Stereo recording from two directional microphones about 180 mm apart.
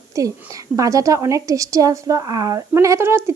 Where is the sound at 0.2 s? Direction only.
20° right (ahead or behind).